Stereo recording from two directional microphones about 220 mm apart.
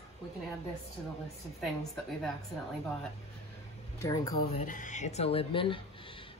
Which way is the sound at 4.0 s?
15° left (ahead or behind).